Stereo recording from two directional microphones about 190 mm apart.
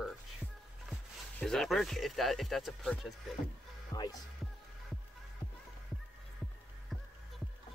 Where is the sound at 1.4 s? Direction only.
Centre (ahead or behind).